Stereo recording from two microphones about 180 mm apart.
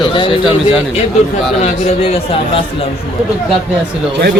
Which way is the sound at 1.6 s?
35° left (ahead or behind).